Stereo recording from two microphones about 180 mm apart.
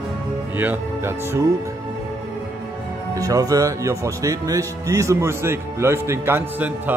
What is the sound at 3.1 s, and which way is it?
Speech, 20° right (ahead or behind).